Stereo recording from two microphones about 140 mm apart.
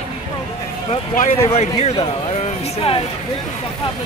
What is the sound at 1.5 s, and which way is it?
Speech, 50° left (ahead or behind).